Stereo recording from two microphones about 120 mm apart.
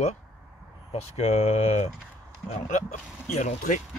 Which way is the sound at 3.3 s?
80° left.